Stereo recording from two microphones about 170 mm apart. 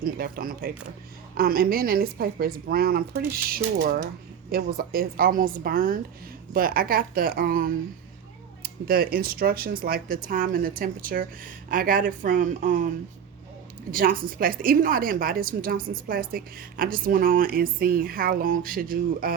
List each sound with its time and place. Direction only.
0.0 s a woman's voice: 60° right (ahead or behind)
13.9 s a woman's voice: 55° right (ahead or behind)